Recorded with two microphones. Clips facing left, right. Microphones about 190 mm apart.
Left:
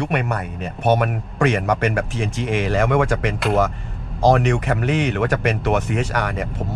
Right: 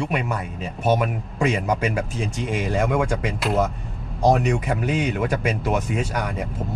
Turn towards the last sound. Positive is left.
turn(degrees=75)  # may be behind; listen again after turning